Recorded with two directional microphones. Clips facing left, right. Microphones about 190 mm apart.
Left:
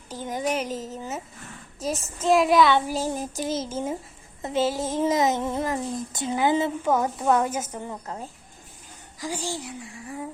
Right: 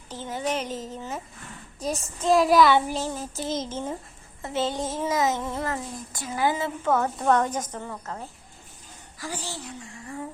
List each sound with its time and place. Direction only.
0.1 s a woman's voice: 15° left (ahead or behind)
3.1 s a woman's voice: 15° left (ahead or behind)
5.0 s speech: 20° left (ahead or behind)
6.9 s a woman's voice: 10° left (ahead or behind)